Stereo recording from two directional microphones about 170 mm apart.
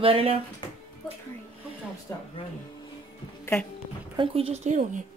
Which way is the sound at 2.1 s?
15° left (ahead or behind).